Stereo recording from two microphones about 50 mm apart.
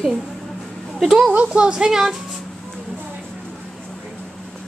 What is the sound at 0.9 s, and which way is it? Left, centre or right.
Speech, centre.